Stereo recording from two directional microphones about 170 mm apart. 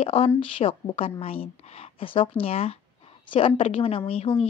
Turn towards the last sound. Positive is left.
turn(degrees=35)  # may be behind; listen again after turning